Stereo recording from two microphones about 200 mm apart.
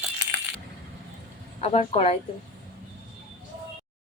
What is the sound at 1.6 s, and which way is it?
Speech, 30° left (ahead or behind).